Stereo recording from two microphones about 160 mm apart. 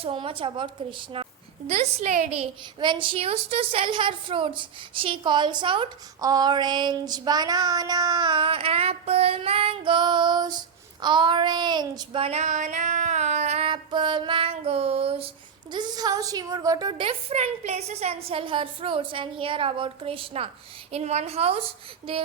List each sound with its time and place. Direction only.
0.0 s a woman's voice: 35° right (ahead or behind)
11.0 s child singing: 30° right (ahead or behind)
15.7 s a woman's voice: 25° right (ahead or behind)
17.1 s a woman's voice: 40° right (ahead or behind)